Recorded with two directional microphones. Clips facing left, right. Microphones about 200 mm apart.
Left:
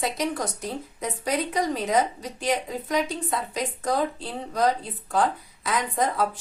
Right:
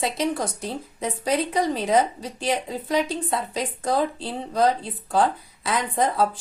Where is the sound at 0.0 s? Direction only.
30° right (ahead or behind).